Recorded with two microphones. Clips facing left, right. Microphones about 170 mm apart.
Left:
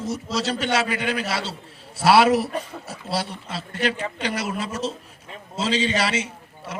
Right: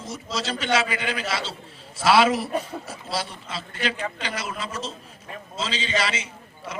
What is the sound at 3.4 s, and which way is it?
A man's voice, 60° left (ahead or behind).